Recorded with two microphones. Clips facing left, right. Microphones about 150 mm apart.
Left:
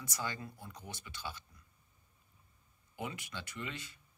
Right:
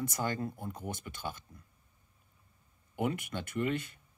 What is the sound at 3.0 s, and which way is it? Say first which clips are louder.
Speech: right 9 dB; 55° right (ahead or behind).